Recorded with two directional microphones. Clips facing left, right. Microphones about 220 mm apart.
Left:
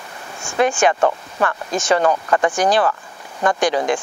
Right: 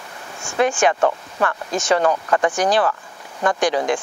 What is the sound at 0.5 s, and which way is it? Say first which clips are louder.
Speech: left 1 dB; 25° left (ahead or behind).